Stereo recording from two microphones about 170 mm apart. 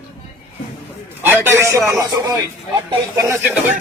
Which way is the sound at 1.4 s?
15° right (ahead or behind).